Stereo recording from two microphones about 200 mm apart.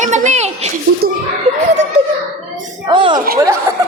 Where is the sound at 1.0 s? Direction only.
50° right (ahead or behind).